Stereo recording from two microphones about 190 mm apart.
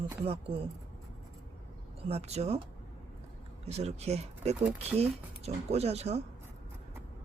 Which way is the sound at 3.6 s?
35° right (ahead or behind).